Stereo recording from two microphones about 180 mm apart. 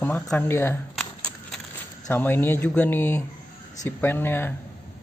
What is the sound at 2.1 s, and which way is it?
Speech, 10° left (ahead or behind).